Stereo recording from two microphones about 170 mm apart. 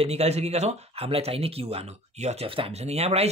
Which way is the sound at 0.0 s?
35° right (ahead or behind).